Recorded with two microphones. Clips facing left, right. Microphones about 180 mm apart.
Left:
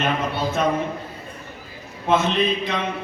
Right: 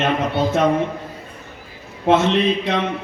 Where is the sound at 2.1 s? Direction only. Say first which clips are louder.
Right 4 dB; 75° right (ahead or behind).